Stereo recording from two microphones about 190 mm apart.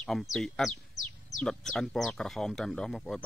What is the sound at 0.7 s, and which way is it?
Bird, 40° left (ahead or behind).